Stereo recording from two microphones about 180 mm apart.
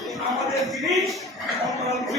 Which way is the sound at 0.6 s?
Centre (ahead or behind).